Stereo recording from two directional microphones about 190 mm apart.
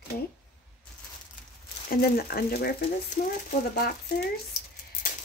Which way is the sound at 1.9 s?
55° left (ahead or behind).